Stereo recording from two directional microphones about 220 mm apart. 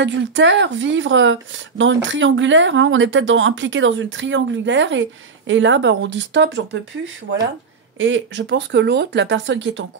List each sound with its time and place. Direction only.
0.0 s speech: 55° right (ahead or behind)
8.0 s speech: 55° right (ahead or behind)